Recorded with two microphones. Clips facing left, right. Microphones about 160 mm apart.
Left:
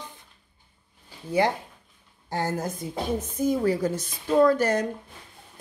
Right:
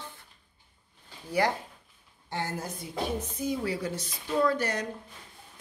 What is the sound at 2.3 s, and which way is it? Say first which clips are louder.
A woman's voice: left 6 dB; 45° left (ahead or behind).